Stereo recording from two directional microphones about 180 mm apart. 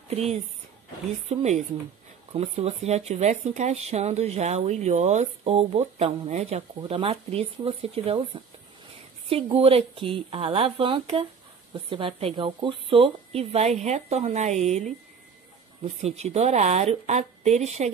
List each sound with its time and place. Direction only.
0.1 s speech: 35° right (ahead or behind)
9.3 s speech: 30° right (ahead or behind)